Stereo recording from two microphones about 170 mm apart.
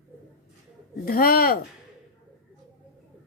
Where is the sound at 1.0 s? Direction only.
60° left (ahead or behind).